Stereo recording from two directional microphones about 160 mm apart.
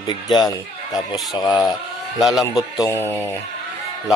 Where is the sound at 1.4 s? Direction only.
25° left (ahead or behind).